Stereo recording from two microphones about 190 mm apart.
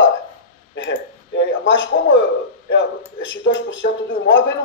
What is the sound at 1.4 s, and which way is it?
Speech, 75° left (ahead or behind).